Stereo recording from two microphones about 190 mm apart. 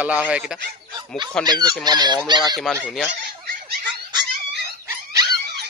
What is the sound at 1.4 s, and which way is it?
Speech, 20° right (ahead or behind).